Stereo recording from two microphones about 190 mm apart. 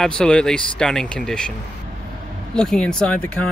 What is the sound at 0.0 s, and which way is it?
Speech, 5° left (ahead or behind).